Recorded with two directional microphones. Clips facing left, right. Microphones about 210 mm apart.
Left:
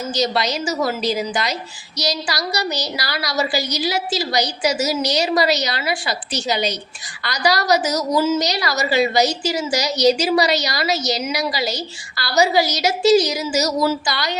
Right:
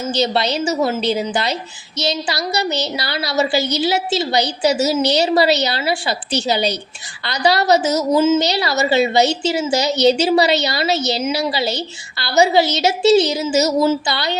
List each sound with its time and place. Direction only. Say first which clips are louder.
0.0 s a woman's voice: right 2 dB; 30° right (ahead or behind)